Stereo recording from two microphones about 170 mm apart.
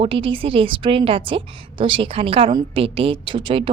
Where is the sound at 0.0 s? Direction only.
30° right (ahead or behind).